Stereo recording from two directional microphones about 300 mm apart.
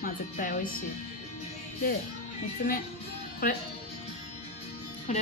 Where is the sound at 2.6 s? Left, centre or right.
Left.